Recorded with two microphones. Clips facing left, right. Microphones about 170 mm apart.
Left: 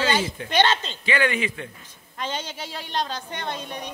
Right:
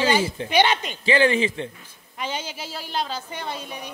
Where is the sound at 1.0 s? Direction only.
30° right (ahead or behind).